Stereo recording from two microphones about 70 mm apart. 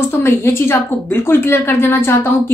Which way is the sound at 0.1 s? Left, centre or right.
Left.